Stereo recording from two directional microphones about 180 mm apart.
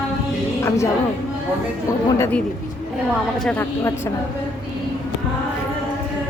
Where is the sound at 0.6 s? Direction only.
15° left (ahead or behind).